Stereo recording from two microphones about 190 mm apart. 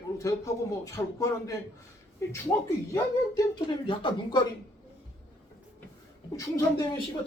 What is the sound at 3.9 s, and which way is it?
Speech, 25° left (ahead or behind).